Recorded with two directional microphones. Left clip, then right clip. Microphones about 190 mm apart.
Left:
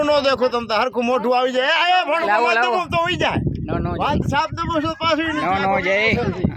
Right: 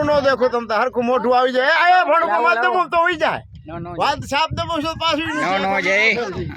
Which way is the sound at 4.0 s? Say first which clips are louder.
Right 3 dB; 55° right (ahead or behind).